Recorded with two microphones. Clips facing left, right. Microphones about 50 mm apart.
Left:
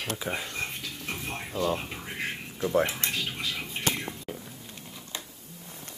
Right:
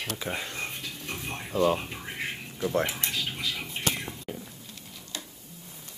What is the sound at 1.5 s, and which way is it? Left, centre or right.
Speech, right.